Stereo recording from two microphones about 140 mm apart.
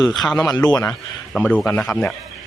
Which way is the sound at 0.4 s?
25° left (ahead or behind).